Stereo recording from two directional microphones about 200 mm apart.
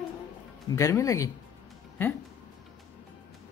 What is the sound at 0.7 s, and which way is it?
Speech, 15° left (ahead or behind).